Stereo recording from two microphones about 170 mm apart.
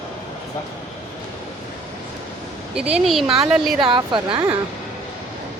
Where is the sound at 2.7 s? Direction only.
5° right (ahead or behind).